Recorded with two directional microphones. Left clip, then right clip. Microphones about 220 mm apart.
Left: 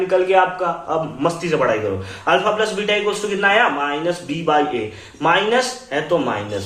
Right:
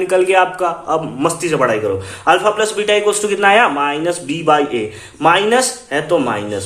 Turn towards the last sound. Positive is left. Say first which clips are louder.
# right 3 dB
turn(degrees=-50)  # may be behind; listen again after turning